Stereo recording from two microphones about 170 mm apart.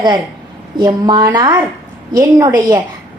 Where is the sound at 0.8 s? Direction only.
25° right (ahead or behind).